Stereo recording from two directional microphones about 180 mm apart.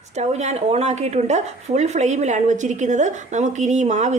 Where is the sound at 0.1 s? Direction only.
40° right (ahead or behind).